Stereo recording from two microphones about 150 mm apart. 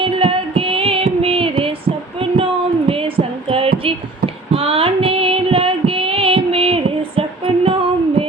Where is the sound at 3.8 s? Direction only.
40° right (ahead or behind).